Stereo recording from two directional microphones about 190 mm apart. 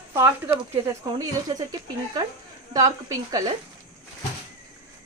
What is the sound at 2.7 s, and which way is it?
Speech, 20° right (ahead or behind).